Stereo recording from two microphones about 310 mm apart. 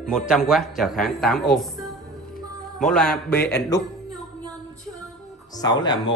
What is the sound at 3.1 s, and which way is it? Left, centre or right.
Speech, left.